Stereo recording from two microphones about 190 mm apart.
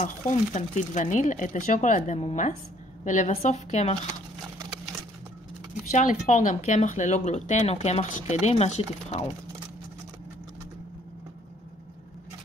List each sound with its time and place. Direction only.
0.0 s speech: 40° left (ahead or behind)
5.9 s speech: 40° left (ahead or behind)